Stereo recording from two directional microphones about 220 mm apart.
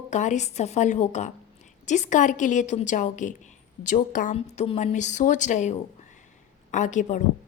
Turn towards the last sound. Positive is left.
turn(degrees=35)  # may be behind; listen again after turning